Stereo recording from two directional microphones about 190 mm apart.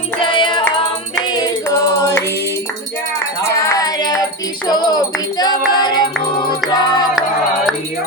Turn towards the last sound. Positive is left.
turn(degrees=20)  # may be behind; listen again after turning